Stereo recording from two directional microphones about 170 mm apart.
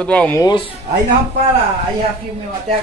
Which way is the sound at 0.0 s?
5° left (ahead or behind).